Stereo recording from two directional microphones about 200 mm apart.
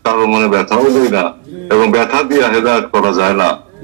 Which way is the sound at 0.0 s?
55° right (ahead or behind).